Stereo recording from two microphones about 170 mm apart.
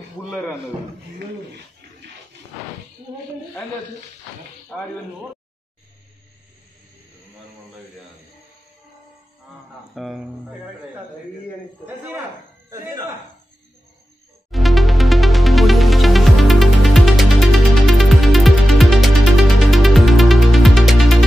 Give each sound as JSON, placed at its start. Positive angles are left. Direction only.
{"t": 9.9, "sound": "speech", "side_deg": 0}
{"t": 11.8, "sound": "speech", "side_deg": -10}
{"t": 14.5, "sound": "music", "side_deg": 0}